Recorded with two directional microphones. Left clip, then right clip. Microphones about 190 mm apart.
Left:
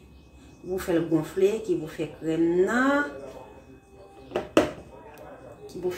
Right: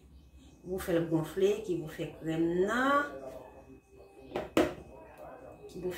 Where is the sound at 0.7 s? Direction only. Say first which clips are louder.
Left 6 dB; 30° left (ahead or behind).